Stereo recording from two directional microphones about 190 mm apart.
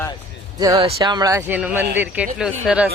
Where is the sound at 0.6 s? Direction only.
20° right (ahead or behind).